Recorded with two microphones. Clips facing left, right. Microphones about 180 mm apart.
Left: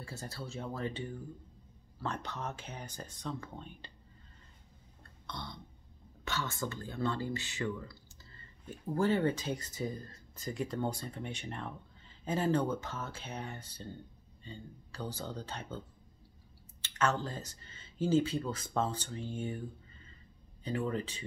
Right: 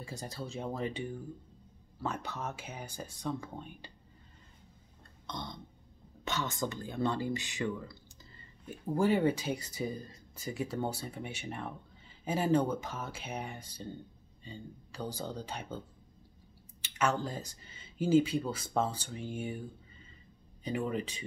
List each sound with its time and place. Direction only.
0.0 s speech: 15° right (ahead or behind)
5.2 s burping: 20° right (ahead or behind)
6.2 s speech: 20° right (ahead or behind)
16.8 s speech: 10° right (ahead or behind)
20.6 s speech: 15° right (ahead or behind)